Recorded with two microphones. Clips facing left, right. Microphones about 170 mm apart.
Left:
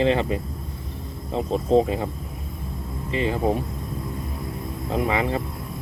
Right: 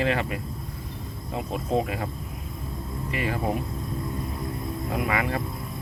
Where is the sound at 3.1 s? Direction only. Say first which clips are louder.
Left 5 dB; 25° left (ahead or behind).